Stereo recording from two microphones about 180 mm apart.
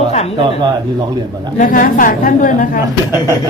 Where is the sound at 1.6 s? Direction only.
50° left (ahead or behind).